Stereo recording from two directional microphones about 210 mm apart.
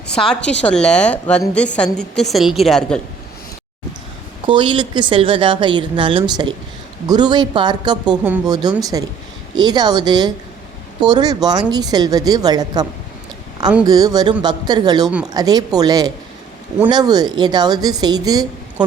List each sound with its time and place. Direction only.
0.1 s a woman's voice: 5° left (ahead or behind)
4.4 s a woman's voice: 25° right (ahead or behind)